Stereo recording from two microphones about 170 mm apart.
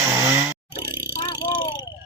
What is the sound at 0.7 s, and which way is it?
Music, 60° right (ahead or behind).